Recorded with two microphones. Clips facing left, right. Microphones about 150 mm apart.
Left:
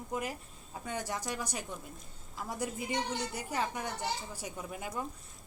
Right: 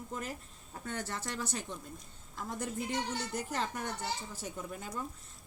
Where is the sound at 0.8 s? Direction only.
15° left (ahead or behind).